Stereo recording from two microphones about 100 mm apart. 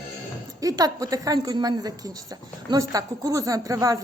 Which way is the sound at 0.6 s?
35° right (ahead or behind).